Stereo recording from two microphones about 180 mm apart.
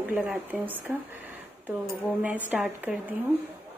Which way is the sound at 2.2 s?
5° right (ahead or behind).